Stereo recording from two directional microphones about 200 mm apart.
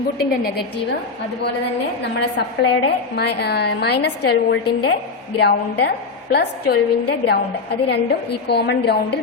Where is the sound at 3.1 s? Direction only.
55° left (ahead or behind).